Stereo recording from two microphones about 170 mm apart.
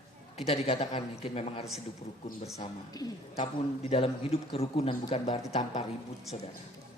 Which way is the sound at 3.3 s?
35° left (ahead or behind).